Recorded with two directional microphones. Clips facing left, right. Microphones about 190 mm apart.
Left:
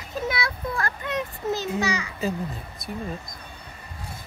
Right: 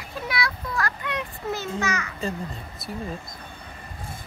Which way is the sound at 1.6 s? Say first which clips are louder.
Left 2 dB; 10° left (ahead or behind).